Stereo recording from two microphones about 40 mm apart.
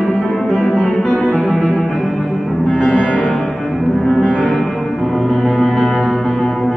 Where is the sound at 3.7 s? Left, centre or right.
Centre.